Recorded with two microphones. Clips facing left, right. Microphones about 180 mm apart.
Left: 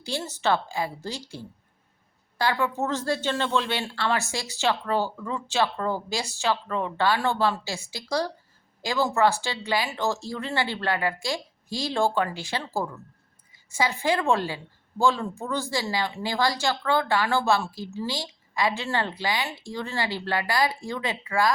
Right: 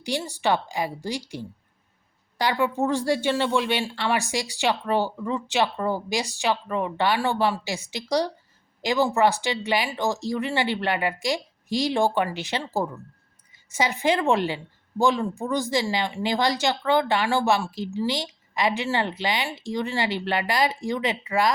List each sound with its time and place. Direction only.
0.0 s a woman's voice: 15° right (ahead or behind)